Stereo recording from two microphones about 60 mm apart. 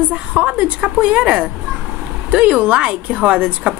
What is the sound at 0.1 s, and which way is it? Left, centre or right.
A woman's voice, right.